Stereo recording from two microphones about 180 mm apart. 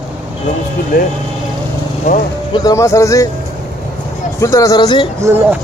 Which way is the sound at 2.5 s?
20° left (ahead or behind).